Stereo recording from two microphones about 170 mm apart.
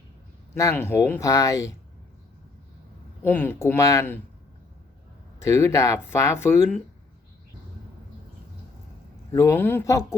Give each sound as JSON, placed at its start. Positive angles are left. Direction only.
{"t": 0.5, "sound": "speech", "side_deg": 15}
{"t": 3.2, "sound": "speech", "side_deg": 10}
{"t": 5.4, "sound": "speech", "side_deg": 15}
{"t": 9.3, "sound": "speech", "side_deg": 15}